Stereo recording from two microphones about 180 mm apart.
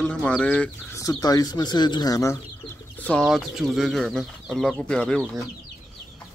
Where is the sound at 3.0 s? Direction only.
5° left (ahead or behind).